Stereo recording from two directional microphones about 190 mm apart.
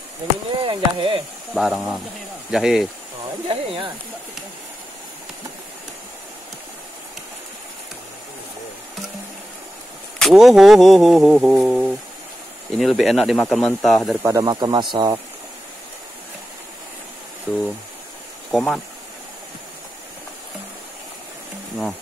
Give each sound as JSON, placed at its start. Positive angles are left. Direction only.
{"t": 0.6, "sound": "speech", "side_deg": -25}
{"t": 1.5, "sound": "speech", "side_deg": 0}
{"t": 3.4, "sound": "speech", "side_deg": -25}
{"t": 10.1, "sound": "speech", "side_deg": 0}
{"t": 14.2, "sound": "speech", "side_deg": -20}
{"t": 18.5, "sound": "speech", "side_deg": 0}